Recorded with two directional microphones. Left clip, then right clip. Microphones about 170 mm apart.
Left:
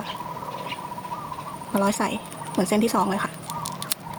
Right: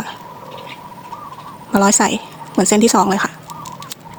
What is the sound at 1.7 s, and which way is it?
A woman's voice, 55° right (ahead or behind).